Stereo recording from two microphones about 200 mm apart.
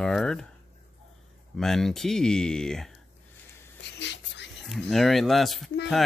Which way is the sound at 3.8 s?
60° left (ahead or behind).